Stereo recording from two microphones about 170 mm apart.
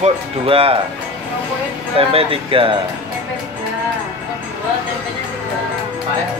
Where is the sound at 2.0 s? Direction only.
35° right (ahead or behind).